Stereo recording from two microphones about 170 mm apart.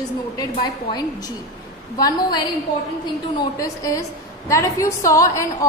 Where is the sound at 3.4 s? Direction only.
20° left (ahead or behind).